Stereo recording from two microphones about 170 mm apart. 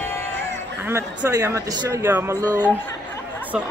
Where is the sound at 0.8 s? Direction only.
15° right (ahead or behind).